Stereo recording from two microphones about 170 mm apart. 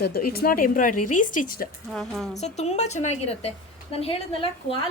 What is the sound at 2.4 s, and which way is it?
Speech, 40° left (ahead or behind).